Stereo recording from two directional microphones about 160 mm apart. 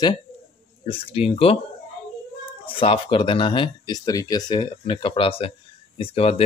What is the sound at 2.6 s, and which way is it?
Speech, 35° left (ahead or behind).